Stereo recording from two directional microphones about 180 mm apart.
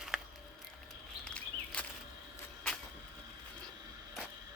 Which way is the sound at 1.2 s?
5° left (ahead or behind).